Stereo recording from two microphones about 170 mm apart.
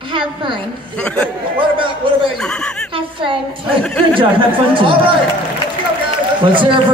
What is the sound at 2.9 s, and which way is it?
A woman's voice, 30° right (ahead or behind).